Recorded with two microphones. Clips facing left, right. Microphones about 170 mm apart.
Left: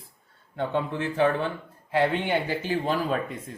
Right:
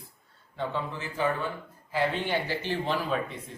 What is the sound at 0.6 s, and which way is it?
A man's voice, 60° left (ahead or behind).